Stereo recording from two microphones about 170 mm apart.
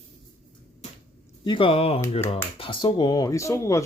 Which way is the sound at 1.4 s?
30° left (ahead or behind).